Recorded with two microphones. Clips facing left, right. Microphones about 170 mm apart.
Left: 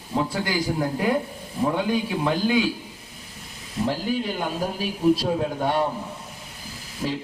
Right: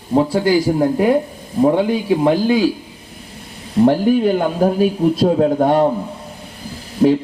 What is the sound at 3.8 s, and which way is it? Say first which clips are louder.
A man's voice: right 12 dB; 55° right (ahead or behind).